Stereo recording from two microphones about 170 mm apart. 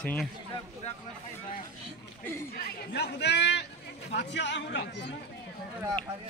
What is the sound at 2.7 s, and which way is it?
A man's voice, 75° left (ahead or behind).